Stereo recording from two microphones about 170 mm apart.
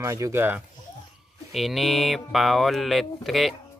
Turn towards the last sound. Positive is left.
turn(degrees=0)  # may be behind; listen again after turning